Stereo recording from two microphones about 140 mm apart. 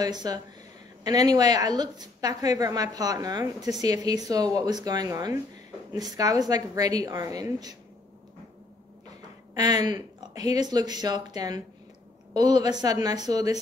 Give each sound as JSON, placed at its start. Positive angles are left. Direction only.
{"t": 0.0, "sound": "a woman's voice", "side_deg": -30}
{"t": 9.5, "sound": "a woman's voice", "side_deg": -30}